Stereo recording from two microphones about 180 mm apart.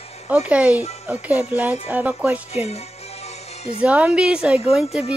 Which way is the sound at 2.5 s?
35° left (ahead or behind).